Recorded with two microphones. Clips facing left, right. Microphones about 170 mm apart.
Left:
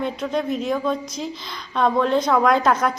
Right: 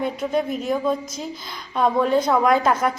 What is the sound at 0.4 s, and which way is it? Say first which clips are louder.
Speech: left 2 dB; 50° right (ahead or behind).